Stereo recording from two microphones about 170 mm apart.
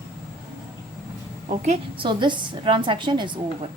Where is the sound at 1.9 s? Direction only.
30° right (ahead or behind).